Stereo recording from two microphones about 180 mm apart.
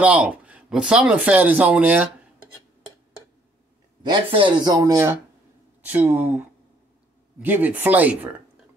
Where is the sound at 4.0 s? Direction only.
25° right (ahead or behind); by 6.4 s 10° right (ahead or behind).